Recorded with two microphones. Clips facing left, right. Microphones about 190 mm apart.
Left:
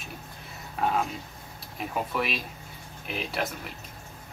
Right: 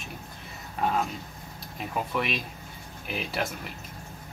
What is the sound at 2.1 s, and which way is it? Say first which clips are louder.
Speech: even; centre (ahead or behind).